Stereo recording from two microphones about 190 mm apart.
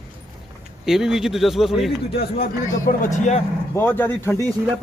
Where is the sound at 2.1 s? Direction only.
50° left (ahead or behind).